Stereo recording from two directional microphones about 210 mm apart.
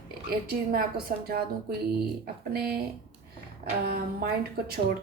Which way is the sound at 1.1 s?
45° right (ahead or behind).